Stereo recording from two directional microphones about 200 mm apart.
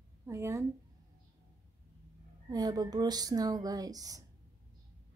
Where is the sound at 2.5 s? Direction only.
20° right (ahead or behind).